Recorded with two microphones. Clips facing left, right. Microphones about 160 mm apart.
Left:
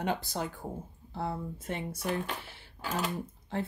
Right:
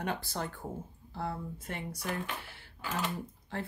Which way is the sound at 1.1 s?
25° left (ahead or behind).